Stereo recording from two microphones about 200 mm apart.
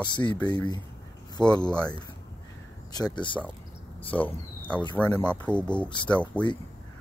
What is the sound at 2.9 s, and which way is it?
Speech, 20° left (ahead or behind).